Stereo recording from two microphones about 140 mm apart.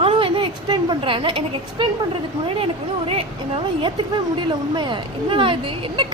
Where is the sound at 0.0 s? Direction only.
40° right (ahead or behind).